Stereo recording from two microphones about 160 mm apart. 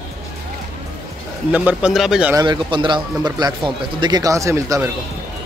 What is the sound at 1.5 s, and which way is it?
Speech, 10° right (ahead or behind).